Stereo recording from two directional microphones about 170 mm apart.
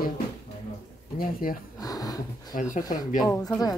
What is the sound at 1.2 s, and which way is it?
Speech, 55° left (ahead or behind).